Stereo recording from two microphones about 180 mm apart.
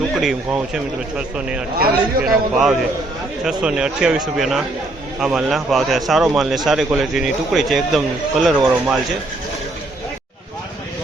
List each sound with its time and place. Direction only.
0.2 s a man's voice: centre (ahead or behind)
1.8 s a man's voice: 55° right (ahead or behind)
2.3 s a man's voice: centre (ahead or behind)